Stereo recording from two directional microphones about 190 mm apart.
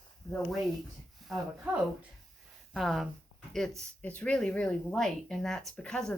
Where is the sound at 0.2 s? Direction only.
15° left (ahead or behind).